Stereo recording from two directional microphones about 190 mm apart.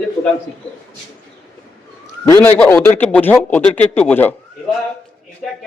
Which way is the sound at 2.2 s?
15° left (ahead or behind).